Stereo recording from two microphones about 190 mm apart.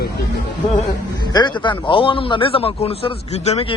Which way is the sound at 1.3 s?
25° left (ahead or behind).